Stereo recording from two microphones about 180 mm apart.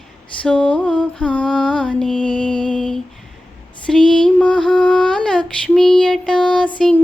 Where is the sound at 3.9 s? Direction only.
5° left (ahead or behind).